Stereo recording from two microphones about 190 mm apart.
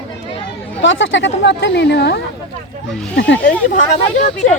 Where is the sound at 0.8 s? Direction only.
80° left.